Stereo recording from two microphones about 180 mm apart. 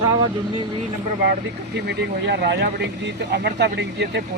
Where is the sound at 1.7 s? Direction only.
70° right (ahead or behind).